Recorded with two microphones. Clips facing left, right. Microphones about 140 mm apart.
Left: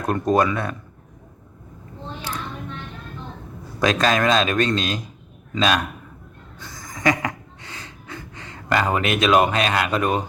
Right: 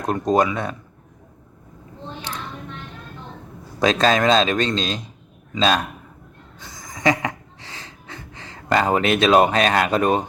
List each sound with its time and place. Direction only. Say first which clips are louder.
0.0 s a man's voice: even; 20° right (ahead or behind)
3.8 s a man's voice: right 2 dB; 25° right (ahead or behind)
6.9 s gasp: right 1 dB; 25° right (ahead or behind)